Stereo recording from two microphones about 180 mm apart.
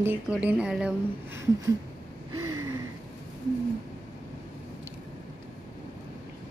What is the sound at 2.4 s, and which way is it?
Gasp, 20° right (ahead or behind).